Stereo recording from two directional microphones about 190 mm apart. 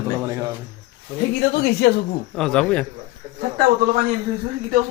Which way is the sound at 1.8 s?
65° left (ahead or behind).